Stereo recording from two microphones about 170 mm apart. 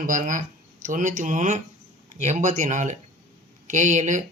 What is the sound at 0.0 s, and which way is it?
Speech, 50° right (ahead or behind).